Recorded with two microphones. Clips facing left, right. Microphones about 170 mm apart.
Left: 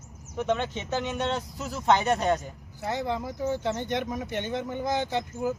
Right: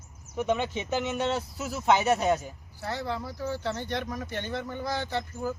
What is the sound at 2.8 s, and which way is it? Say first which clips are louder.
Speech: left 3 dB; 20° left (ahead or behind).